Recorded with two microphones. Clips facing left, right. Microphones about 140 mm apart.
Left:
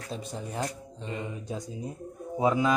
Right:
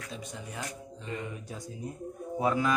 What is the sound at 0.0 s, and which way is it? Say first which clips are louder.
Speech: left 5 dB; 35° left (ahead or behind).